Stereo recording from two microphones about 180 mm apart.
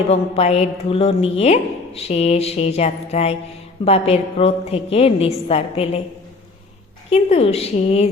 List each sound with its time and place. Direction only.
0.1 s a woman's voice: 35° left (ahead or behind)
7.1 s a woman's voice: 35° left (ahead or behind)